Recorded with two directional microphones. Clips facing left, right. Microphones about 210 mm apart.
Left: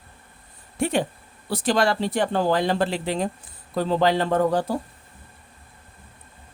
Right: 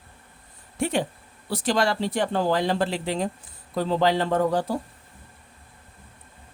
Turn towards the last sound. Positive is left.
turn(degrees=55)  # may be behind; listen again after turning